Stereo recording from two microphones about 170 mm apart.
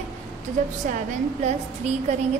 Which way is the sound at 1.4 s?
40° right (ahead or behind).